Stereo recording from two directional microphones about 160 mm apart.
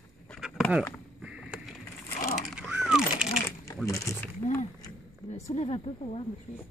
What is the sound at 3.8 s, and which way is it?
Speech, 20° left (ahead or behind).